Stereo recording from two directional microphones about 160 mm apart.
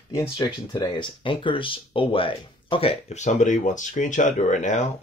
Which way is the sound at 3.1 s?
45° left (ahead or behind).